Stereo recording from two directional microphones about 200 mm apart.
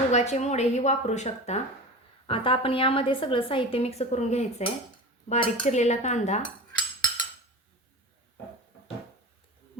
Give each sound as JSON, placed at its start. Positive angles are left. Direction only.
{"t": 0.1, "sound": "a woman's voice", "side_deg": 35}